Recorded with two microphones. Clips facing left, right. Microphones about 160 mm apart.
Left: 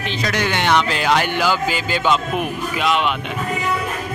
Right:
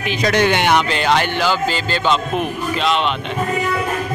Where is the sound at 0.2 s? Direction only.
25° right (ahead or behind).